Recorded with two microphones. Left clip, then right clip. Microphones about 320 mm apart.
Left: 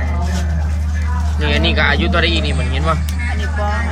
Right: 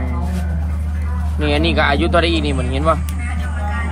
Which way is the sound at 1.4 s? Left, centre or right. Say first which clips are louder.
Even; centre.